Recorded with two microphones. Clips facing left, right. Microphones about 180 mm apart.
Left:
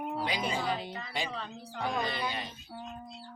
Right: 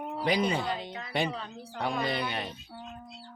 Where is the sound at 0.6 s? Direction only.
5° left (ahead or behind).